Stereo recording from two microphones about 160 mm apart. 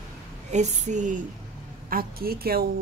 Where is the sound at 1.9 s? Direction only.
70° right (ahead or behind).